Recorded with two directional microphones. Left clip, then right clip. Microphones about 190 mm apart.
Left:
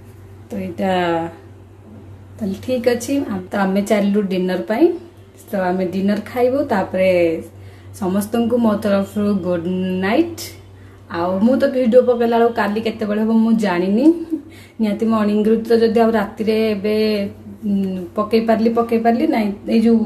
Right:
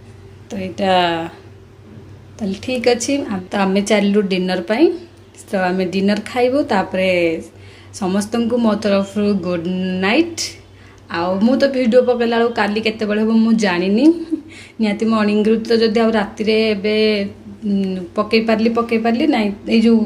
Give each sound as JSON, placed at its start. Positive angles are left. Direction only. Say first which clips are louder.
{"t": 0.5, "sound": "a woman's voice", "louder": "right 4 dB", "side_deg": -5}
{"t": 2.4, "sound": "a woman's voice", "louder": "right 1 dB", "side_deg": -20}
{"t": 3.4, "sound": "a woman's voice", "louder": "right 2 dB", "side_deg": -10}